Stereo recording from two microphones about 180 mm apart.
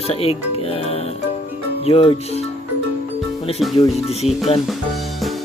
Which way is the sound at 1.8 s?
35° left (ahead or behind).